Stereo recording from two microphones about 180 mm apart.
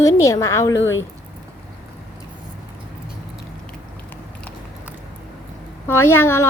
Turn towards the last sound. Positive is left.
turn(degrees=15)  # may be behind; listen again after turning